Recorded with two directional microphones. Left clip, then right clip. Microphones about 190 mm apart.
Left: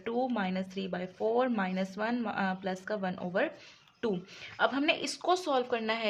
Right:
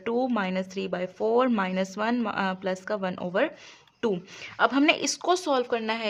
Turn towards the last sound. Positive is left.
turn(degrees=-25)  # may be behind; listen again after turning